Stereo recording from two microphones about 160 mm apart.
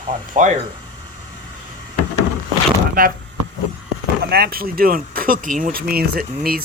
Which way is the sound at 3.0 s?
60° right (ahead or behind).